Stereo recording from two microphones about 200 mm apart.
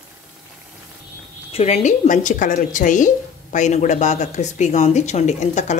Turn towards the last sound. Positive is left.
turn(degrees=35)  # may be behind; listen again after turning